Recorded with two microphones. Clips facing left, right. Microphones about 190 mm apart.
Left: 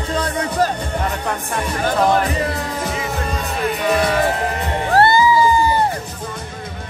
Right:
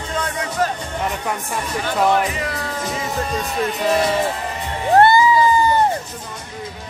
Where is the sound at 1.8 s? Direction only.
35° left (ahead or behind).